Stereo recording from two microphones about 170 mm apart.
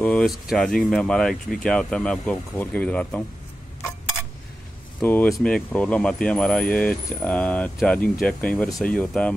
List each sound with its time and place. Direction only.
0.0 s speech: 5° left (ahead or behind)
5.0 s speech: 10° left (ahead or behind)